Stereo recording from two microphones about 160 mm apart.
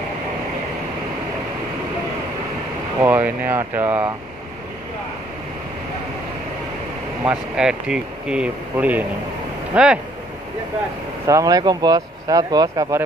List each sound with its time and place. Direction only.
3.0 s speech: 15° right (ahead or behind)
7.2 s speech: 5° right (ahead or behind)
11.2 s speech: 20° right (ahead or behind)